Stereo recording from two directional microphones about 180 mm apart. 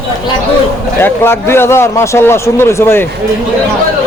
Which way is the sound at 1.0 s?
10° left (ahead or behind).